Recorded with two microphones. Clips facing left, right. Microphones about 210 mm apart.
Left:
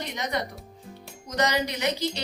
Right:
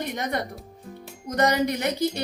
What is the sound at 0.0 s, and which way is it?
Music, 50° right (ahead or behind).